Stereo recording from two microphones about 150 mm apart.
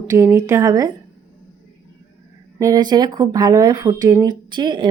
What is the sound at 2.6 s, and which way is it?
A woman's voice, 25° right (ahead or behind).